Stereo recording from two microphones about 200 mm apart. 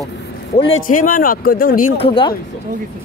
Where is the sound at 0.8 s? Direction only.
45° left (ahead or behind).